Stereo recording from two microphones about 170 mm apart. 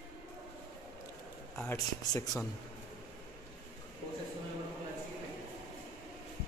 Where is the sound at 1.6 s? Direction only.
10° left (ahead or behind).